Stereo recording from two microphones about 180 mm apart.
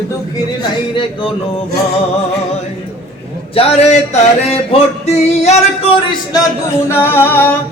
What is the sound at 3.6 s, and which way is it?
Music, 35° left (ahead or behind).